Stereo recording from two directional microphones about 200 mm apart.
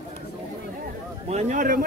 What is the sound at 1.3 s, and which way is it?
Speech, 35° right (ahead or behind).